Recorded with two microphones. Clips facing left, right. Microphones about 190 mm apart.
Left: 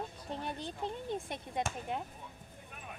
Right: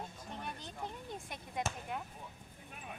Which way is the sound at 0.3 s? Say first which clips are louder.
Left 7 dB; 30° left (ahead or behind).